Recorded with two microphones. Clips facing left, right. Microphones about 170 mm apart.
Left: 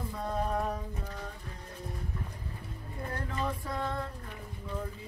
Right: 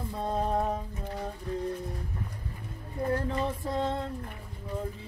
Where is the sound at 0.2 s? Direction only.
25° right (ahead or behind).